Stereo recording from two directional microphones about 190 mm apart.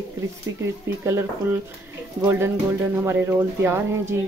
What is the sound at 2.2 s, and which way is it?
Speech, 10° right (ahead or behind).